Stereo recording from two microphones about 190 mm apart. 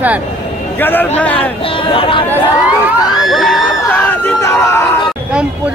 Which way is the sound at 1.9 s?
25° left (ahead or behind).